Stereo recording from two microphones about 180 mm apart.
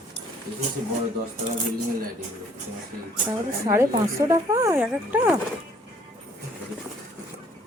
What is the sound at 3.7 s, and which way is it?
Speech, 15° right (ahead or behind).